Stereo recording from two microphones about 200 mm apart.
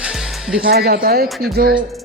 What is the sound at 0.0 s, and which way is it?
Music, centre (ahead or behind).